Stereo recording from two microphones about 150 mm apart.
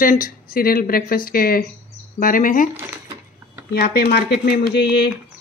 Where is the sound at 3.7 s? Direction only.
90° left.